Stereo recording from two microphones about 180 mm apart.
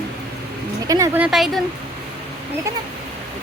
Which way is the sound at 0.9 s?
15° right (ahead or behind).